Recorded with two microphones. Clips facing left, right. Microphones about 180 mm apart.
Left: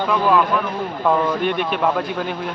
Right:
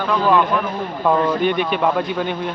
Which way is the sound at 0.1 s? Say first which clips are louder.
Right 1 dB; centre (ahead or behind).